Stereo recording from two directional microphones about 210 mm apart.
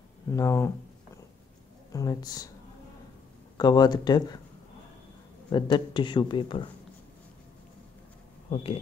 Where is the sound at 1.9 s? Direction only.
15° left (ahead or behind).